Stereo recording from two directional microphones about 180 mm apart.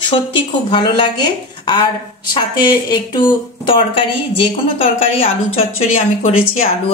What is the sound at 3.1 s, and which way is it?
A woman's voice, 25° left (ahead or behind).